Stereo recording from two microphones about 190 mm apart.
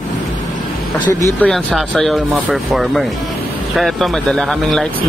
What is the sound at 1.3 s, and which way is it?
Speech, centre (ahead or behind).